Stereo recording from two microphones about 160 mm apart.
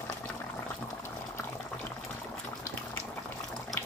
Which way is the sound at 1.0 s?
15° left (ahead or behind).